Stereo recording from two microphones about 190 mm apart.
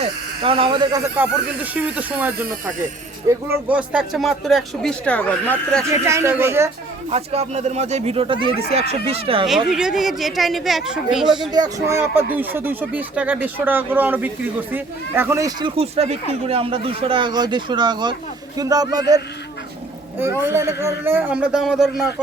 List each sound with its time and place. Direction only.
0.0 s speech: 30° right (ahead or behind)
1.1 s speech: 10° right (ahead or behind); by 5.8 s 5° left (ahead or behind)
5.9 s speech: 15° right (ahead or behind)
7.1 s speech: 35° right (ahead or behind)
9.6 s speech: 5° right (ahead or behind)
11.5 s speech: 15° right (ahead or behind)
15.7 s speech: 30° right (ahead or behind)
20.4 s speech: 15° right (ahead or behind)